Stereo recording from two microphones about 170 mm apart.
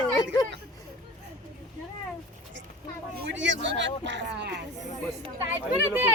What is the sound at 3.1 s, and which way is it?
Speech, 90° right.